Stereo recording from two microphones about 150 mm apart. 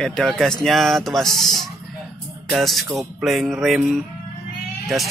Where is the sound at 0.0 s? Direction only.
5° left (ahead or behind).